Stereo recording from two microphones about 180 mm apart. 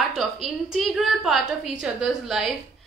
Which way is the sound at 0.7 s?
Centre (ahead or behind).